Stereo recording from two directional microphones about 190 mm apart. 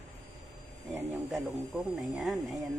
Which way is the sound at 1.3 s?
Centre (ahead or behind).